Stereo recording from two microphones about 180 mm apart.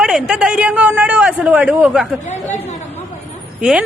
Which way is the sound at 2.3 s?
40° left (ahead or behind).